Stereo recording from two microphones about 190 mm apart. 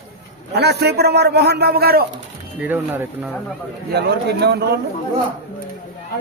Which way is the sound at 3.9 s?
60° right (ahead or behind).